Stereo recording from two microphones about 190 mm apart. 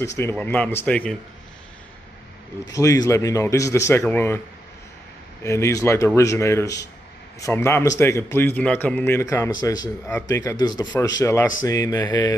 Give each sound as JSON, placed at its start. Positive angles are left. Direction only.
{"t": 0.0, "sound": "a man's voice", "side_deg": 15}
{"t": 2.7, "sound": "a man's voice", "side_deg": 15}
{"t": 5.4, "sound": "a man's voice", "side_deg": 15}